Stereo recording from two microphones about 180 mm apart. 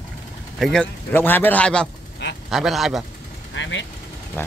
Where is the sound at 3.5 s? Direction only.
90° left.